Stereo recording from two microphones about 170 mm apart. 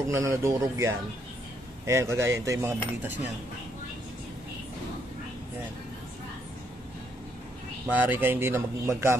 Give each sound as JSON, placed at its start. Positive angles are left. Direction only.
{"t": 0.1, "sound": "speech", "side_deg": -15}
{"t": 7.9, "sound": "speech", "side_deg": -10}